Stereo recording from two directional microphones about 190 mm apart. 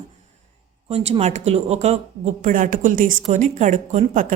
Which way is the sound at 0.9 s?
30° right (ahead or behind).